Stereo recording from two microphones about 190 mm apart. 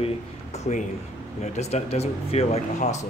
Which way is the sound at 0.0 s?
35° left (ahead or behind).